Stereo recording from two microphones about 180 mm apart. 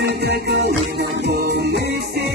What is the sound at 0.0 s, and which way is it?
Music, 70° right (ahead or behind).